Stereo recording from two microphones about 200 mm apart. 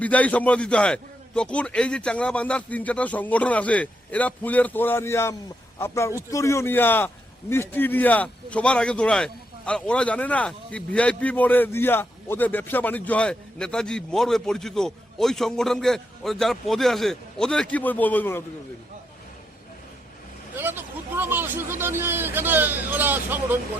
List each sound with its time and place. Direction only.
0.0 s a man's voice: 5° left (ahead or behind)
20.6 s speech: 10° right (ahead or behind)